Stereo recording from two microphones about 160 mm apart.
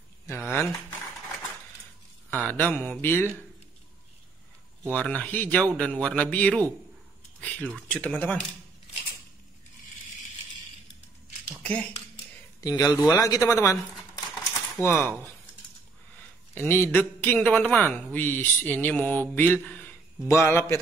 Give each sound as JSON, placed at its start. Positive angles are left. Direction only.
{"t": 0.3, "sound": "a man's voice", "side_deg": 15}
{"t": 2.3, "sound": "a man's voice", "side_deg": 10}
{"t": 4.9, "sound": "a man's voice", "side_deg": 5}
{"t": 7.3, "sound": "a sound", "side_deg": 5}
{"t": 7.9, "sound": "a man's voice", "side_deg": 10}
{"t": 11.6, "sound": "speech", "side_deg": 10}
{"t": 12.5, "sound": "speech", "side_deg": 25}
{"t": 13.9, "sound": "typewriter", "side_deg": 0}
{"t": 14.9, "sound": "a man's voice", "side_deg": 15}
{"t": 16.5, "sound": "a man's voice", "side_deg": 15}